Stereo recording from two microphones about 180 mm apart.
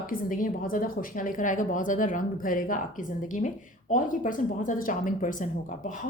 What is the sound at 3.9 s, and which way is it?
A woman's voice, 45° left (ahead or behind).